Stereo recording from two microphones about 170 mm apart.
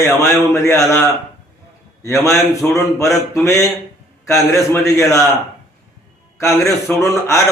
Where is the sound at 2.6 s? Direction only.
5° left (ahead or behind).